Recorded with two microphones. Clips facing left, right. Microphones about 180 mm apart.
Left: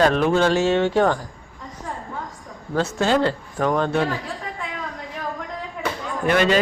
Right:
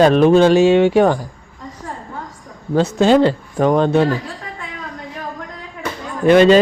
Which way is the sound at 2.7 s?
15° right (ahead or behind).